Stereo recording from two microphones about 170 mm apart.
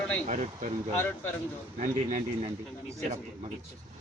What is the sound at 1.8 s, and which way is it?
Speech, 50° right (ahead or behind).